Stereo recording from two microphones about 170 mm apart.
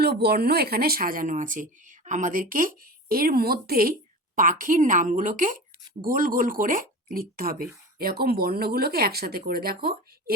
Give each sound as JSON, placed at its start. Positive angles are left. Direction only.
{"t": 0.0, "sound": "speech", "side_deg": -70}
{"t": 4.4, "sound": "a woman's voice", "side_deg": -50}